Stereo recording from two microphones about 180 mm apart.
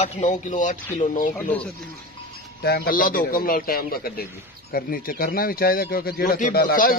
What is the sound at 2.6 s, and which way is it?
Speech, 60° left (ahead or behind).